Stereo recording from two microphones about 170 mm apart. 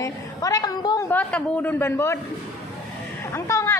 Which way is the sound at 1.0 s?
10° left (ahead or behind).